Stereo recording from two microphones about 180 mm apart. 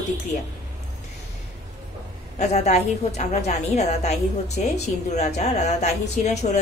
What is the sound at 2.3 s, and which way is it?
Speech, 40° left (ahead or behind).